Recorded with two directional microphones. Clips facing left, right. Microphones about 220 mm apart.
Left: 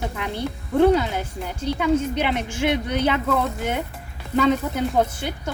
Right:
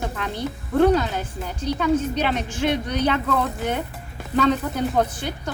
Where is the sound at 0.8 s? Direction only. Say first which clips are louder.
Left 1 dB; 15° left (ahead or behind).